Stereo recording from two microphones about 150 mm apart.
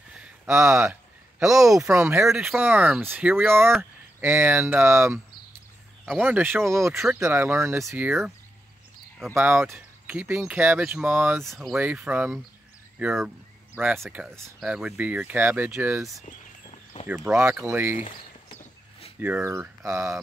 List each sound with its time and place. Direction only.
0.1 s a sound: 5° right (ahead or behind)
1.4 s speech: 5° right (ahead or behind)
9.3 s speech: 15° right (ahead or behind)
11.4 s speech: centre (ahead or behind)
11.8 s speech: 10° right (ahead or behind)
17.1 s speech: 5° right (ahead or behind)
17.6 s speech: 15° right (ahead or behind)
18.6 s a sound: 40° left (ahead or behind)
19.1 s speech: 10° right (ahead or behind)